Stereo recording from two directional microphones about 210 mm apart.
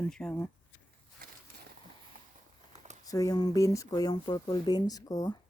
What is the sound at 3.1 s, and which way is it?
Speech, 15° left (ahead or behind).